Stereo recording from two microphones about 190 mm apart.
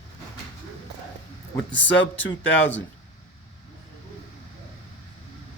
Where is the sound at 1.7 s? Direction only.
75° left (ahead or behind).